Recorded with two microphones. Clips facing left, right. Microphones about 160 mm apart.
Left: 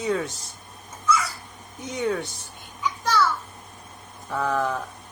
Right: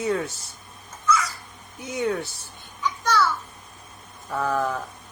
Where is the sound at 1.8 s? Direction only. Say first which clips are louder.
Even; 10° right (ahead or behind).